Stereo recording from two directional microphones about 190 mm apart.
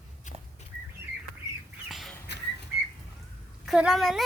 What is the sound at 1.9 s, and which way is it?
Bird, centre (ahead or behind).